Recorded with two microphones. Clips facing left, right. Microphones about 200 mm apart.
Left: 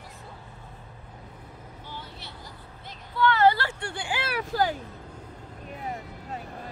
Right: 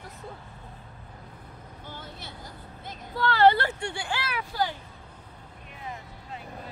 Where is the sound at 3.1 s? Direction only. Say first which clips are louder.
Left 4 dB; 40° right (ahead or behind).